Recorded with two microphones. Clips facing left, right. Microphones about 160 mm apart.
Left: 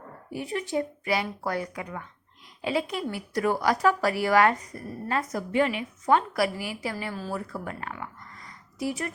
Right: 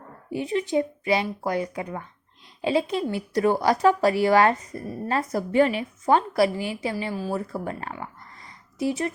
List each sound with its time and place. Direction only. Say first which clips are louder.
0.3 s a woman's voice: right 5 dB; 20° right (ahead or behind)
7.3 s speech: right 4 dB; 30° right (ahead or behind)